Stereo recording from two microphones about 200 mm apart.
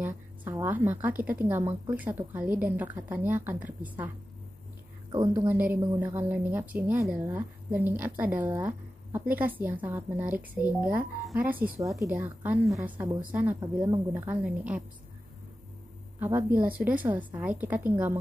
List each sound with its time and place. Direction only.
0.0 s speech: 10° right (ahead or behind)
5.1 s a woman's voice: 20° right (ahead or behind)
5.5 s speech: 10° right (ahead or behind)
16.2 s a woman's voice: 10° right (ahead or behind)